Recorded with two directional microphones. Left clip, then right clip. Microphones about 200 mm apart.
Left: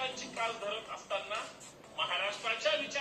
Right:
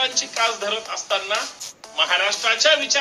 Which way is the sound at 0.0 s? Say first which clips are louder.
Right 15 dB; 50° right (ahead or behind).